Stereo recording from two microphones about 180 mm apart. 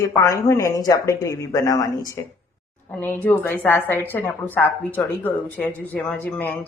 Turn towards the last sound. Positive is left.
turn(degrees=10)  # may be behind; listen again after turning